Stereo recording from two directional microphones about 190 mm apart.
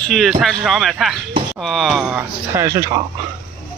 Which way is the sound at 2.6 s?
15° right (ahead or behind).